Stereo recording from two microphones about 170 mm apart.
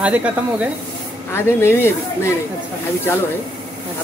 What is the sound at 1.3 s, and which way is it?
Speech, 15° left (ahead or behind).